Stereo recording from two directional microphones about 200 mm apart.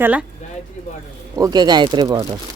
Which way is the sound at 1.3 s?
20° right (ahead or behind).